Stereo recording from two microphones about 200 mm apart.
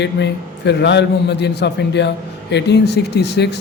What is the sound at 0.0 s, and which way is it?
Speech, 60° left (ahead or behind).